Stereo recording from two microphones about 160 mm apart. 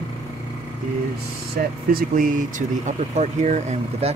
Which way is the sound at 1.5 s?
70° right (ahead or behind).